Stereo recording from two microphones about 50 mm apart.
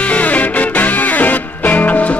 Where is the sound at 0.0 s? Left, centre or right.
Left.